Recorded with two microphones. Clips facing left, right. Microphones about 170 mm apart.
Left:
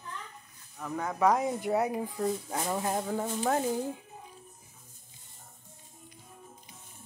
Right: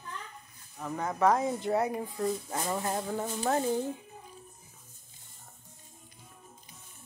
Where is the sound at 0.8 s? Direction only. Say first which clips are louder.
Even; 15° right (ahead or behind).